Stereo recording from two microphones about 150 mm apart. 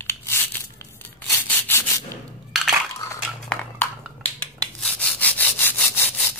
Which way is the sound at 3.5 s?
10° left (ahead or behind).